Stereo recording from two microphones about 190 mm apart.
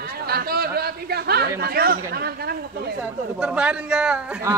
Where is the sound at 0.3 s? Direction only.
55° right (ahead or behind).